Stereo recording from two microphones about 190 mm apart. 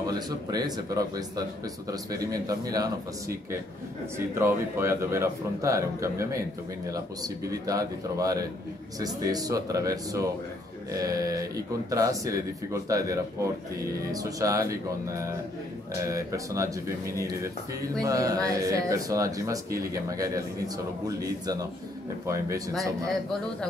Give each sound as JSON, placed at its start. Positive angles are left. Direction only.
{"t": 0.0, "sound": "speech", "side_deg": -20}
{"t": 4.4, "sound": "speech", "side_deg": -15}